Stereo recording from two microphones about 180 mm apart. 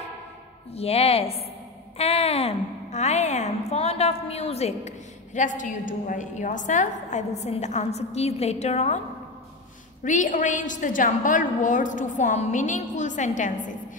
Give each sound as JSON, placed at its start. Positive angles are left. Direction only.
{"t": 0.7, "sound": "a woman's voice", "side_deg": 35}
{"t": 10.0, "sound": "a woman's voice", "side_deg": 45}